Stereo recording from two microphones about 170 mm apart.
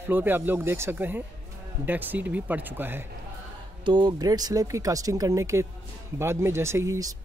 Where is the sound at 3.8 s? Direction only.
25° right (ahead or behind).